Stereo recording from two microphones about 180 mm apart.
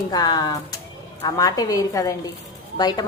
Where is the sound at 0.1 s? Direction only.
20° left (ahead or behind).